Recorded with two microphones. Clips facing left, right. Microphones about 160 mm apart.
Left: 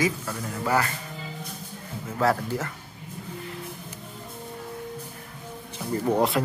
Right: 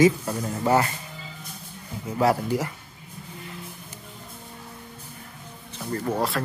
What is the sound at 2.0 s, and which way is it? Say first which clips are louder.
Speech: right 2 dB; 15° right (ahead or behind).